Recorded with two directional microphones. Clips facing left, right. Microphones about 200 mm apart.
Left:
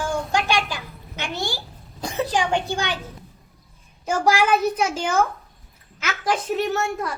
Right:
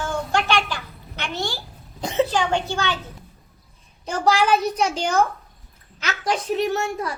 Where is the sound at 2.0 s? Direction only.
20° right (ahead or behind).